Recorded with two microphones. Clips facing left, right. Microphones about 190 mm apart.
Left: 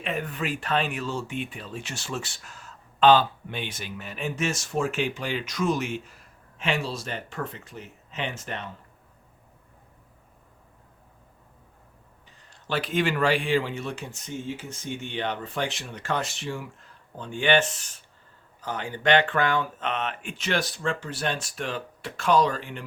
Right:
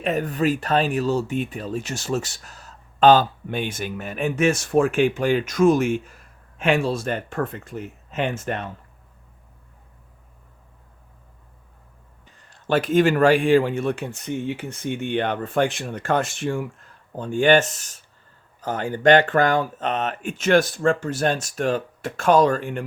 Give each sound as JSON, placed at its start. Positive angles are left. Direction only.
{"t": 0.0, "sound": "speech", "side_deg": -40}
{"t": 12.6, "sound": "speech", "side_deg": -45}